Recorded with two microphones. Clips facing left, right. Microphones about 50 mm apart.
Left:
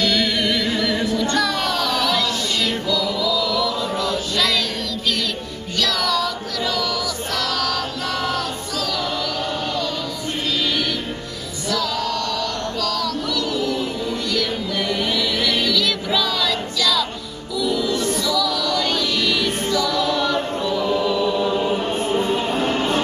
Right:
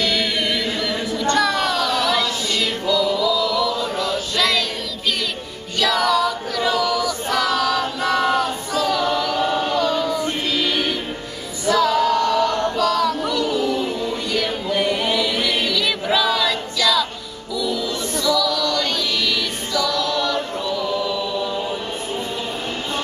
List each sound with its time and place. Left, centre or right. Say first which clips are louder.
0.0 s music: left 1 dB; centre
1.3 s child singing: right 2 dB; centre
2.8 s music: right 3 dB; centre
5.8 s choir: right 4 dB; centre
9.0 s music: right 4 dB; centre
9.7 s choir: right 5 dB; right
11.7 s music: right 7 dB; right; by 18.9 s centre
19.7 s a capella: right 1 dB; centre